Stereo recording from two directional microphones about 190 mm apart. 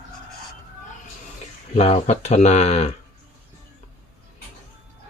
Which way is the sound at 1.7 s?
30° left (ahead or behind).